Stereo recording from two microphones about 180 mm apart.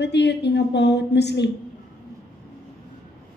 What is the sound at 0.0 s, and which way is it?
Speech, 70° left (ahead or behind).